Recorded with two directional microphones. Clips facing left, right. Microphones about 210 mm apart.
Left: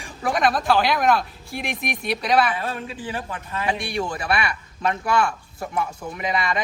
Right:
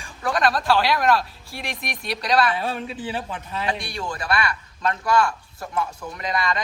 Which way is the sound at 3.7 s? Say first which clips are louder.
Left 5 dB; 15° left (ahead or behind).